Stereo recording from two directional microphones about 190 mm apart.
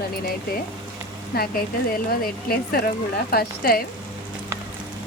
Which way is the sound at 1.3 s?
50° left (ahead or behind).